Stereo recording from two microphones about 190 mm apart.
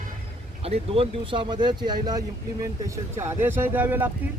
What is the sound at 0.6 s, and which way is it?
Speech, 30° right (ahead or behind).